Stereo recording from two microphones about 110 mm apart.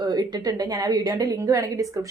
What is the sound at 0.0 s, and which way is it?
Speech, 40° right (ahead or behind).